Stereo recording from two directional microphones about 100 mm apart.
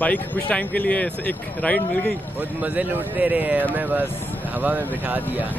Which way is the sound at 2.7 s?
15° right (ahead or behind).